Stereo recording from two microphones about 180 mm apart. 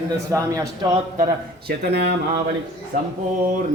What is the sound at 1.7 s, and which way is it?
Speech, 65° right (ahead or behind).